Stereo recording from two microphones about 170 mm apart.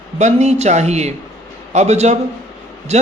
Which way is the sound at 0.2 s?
40° right (ahead or behind).